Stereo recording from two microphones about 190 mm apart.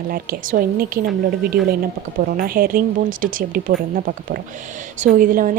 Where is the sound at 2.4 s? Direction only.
50° right (ahead or behind).